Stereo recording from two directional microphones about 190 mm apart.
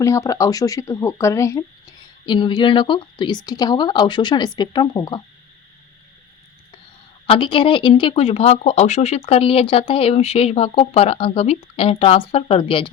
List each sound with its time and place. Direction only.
0.0 s speech: 15° left (ahead or behind)
7.3 s speech: 25° left (ahead or behind)